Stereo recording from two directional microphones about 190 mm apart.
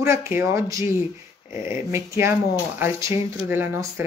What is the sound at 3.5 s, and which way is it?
Speech, 10° right (ahead or behind).